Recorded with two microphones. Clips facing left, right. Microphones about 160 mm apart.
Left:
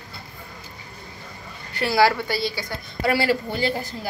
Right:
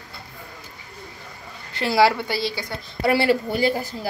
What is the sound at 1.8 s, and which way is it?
A woman's voice, 20° right (ahead or behind).